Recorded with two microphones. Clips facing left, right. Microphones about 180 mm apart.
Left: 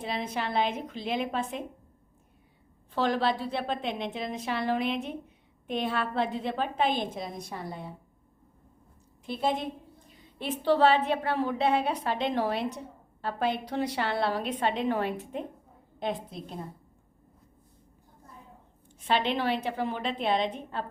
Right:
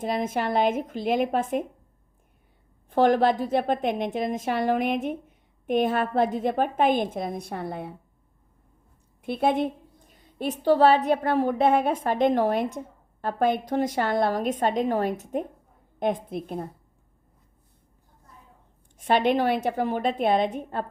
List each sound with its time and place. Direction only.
0.0 s a woman's voice: 45° right (ahead or behind)
2.9 s a woman's voice: 50° right (ahead or behind)
9.2 s a woman's voice: 60° right (ahead or behind)
10.1 s a woman's voice: 45° right (ahead or behind)
18.9 s a woman's voice: 50° right (ahead or behind)